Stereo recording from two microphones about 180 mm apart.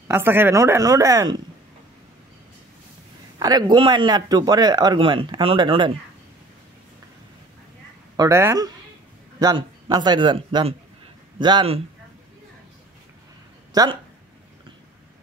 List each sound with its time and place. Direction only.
0.1 s speech: 10° right (ahead or behind)
3.3 s speech: 20° right (ahead or behind)
8.2 s speech: 15° right (ahead or behind)
13.7 s speech: 20° right (ahead or behind)